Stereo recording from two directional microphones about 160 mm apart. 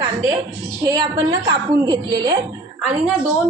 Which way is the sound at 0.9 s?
25° right (ahead or behind).